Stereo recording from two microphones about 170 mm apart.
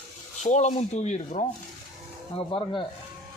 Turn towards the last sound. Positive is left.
turn(degrees=30)  # may be behind; listen again after turning